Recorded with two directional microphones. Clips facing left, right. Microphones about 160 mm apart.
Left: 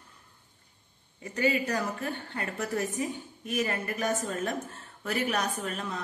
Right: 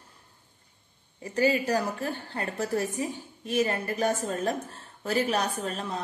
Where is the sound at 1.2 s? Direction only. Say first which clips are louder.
Right 3 dB; 35° right (ahead or behind).